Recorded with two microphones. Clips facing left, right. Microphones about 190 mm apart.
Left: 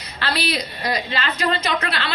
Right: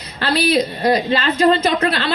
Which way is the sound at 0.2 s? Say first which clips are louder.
Right 8 dB; 30° right (ahead or behind).